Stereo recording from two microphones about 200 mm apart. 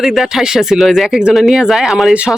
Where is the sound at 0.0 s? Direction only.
Centre (ahead or behind).